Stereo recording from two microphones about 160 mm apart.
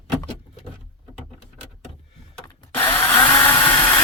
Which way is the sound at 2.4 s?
15° left (ahead or behind).